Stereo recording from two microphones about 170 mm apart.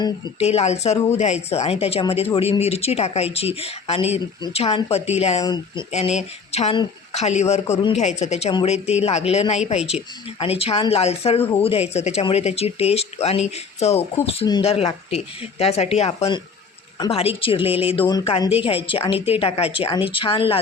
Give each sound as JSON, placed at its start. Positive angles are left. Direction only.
{"t": 0.3, "sound": "speech", "side_deg": 40}
{"t": 5.4, "sound": "speech", "side_deg": 25}
{"t": 5.9, "sound": "speech", "side_deg": 40}